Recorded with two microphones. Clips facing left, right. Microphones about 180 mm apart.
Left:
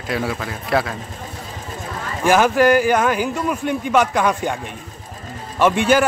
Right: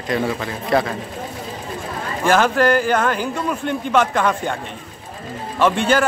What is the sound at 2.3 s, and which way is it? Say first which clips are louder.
A man's voice: left 2 dB; 10° left (ahead or behind).